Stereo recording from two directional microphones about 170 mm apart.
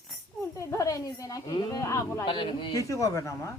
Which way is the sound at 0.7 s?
20° left (ahead or behind).